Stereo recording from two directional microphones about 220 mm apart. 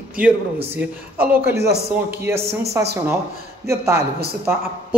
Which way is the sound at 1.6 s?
50° right (ahead or behind).